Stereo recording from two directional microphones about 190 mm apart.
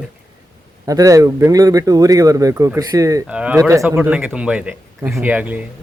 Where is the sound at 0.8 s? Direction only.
20° right (ahead or behind).